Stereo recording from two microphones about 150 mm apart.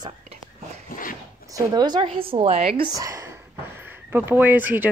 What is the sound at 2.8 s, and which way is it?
Speech, 25° right (ahead or behind).